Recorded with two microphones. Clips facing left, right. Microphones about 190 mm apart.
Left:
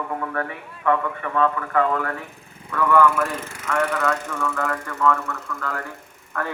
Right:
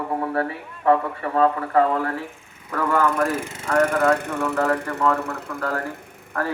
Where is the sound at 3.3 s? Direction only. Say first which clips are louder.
Right 4 dB; 15° right (ahead or behind).